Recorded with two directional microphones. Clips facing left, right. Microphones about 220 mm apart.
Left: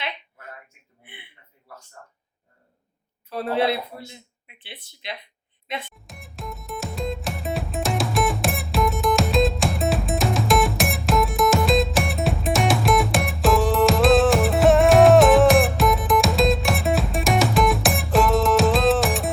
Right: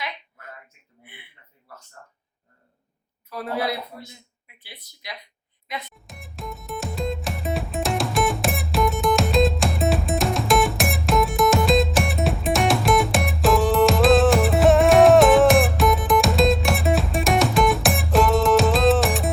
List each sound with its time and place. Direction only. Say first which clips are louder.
3.2 s speech: left 4 dB; 30° left (ahead or behind)
5.9 s music: even; centre (ahead or behind)